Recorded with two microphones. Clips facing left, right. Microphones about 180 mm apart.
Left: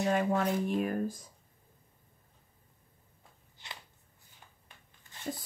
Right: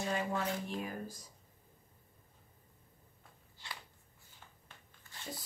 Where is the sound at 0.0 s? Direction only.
55° left (ahead or behind).